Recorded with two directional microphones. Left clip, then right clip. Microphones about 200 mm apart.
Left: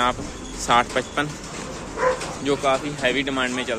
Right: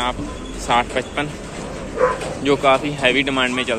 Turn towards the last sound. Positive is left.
turn(degrees=10)  # may be behind; listen again after turning